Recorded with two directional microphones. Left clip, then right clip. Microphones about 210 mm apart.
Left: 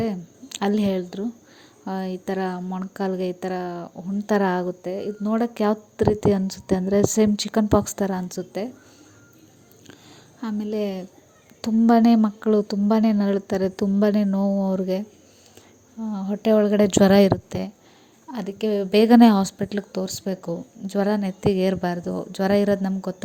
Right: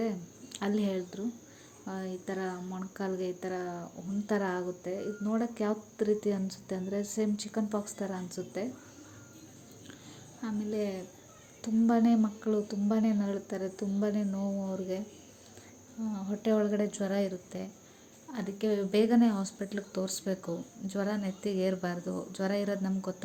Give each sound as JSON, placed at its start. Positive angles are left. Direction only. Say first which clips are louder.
{"t": 0.0, "sound": "a woman's voice", "louder": "left 7 dB", "side_deg": 35}
{"t": 10.4, "sound": "a woman's voice", "louder": "left 8 dB", "side_deg": 40}
{"t": 16.0, "sound": "a woman's voice", "louder": "left 10 dB", "side_deg": 35}